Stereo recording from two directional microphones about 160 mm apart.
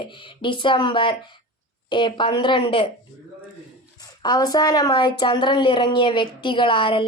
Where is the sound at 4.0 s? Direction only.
25° left (ahead or behind).